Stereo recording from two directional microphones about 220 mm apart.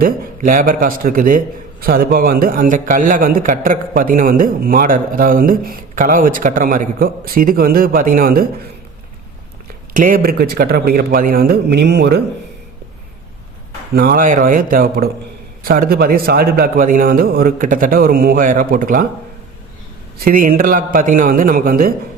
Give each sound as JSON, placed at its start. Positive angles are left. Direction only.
{"t": 0.0, "sound": "a man's voice", "side_deg": -40}
{"t": 9.9, "sound": "speech", "side_deg": -40}
{"t": 13.9, "sound": "a man's voice", "side_deg": -40}
{"t": 20.1, "sound": "a man's voice", "side_deg": -40}